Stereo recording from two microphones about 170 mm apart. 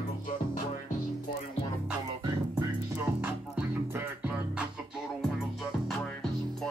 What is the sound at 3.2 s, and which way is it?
Music, 10° right (ahead or behind).